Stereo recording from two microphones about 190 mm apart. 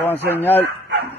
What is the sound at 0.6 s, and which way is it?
Bow-wow, 60° right (ahead or behind).